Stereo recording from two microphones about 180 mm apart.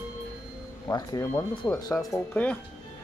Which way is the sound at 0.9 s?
20° left (ahead or behind).